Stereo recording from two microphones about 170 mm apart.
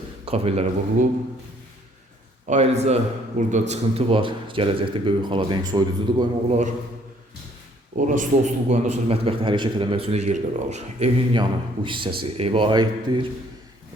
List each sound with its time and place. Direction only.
0.3 s a man's voice: 35° right (ahead or behind)
2.5 s a man's voice: 40° right (ahead or behind)
7.9 s a man's voice: 50° right (ahead or behind)
11.3 s a man's voice: 30° right (ahead or behind)